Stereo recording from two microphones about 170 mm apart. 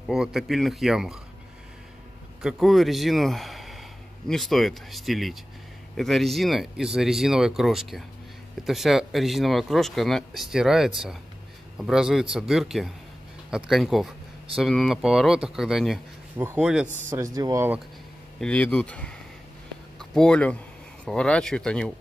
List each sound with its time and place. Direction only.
0.1 s speech: centre (ahead or behind)
2.4 s speech: centre (ahead or behind)
16.3 s speech: 10° right (ahead or behind)
17.1 s speech: 20° right (ahead or behind)
18.4 s speech: 5° left (ahead or behind)